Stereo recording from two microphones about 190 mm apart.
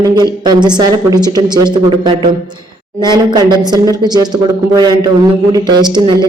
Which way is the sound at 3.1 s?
20° right (ahead or behind).